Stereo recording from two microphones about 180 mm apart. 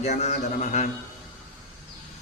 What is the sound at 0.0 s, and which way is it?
Music, 40° left (ahead or behind).